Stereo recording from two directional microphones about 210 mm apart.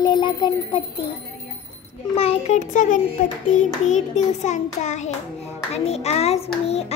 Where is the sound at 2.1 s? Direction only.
30° left (ahead or behind).